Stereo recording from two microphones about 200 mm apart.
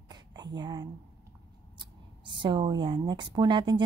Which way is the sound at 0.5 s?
20° right (ahead or behind).